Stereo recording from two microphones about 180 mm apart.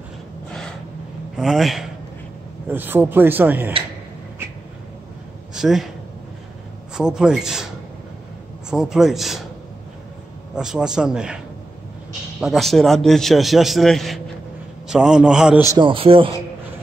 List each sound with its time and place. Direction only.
0.5 s gasp: 5° left (ahead or behind)
1.3 s a man's voice: centre (ahead or behind)
5.5 s a sound: centre (ahead or behind)
7.0 s a man's voice: 5° right (ahead or behind)
8.6 s a man's voice: 5° right (ahead or behind)
10.5 s a man's voice: 5° right (ahead or behind)
15.7 s a man's voice: 30° right (ahead or behind)